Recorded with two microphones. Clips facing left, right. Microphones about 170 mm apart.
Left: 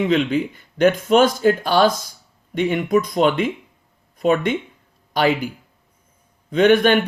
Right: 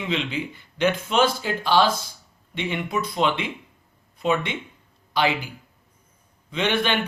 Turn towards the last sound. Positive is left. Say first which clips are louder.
# left 10 dB
turn(degrees=45)  # may be behind; listen again after turning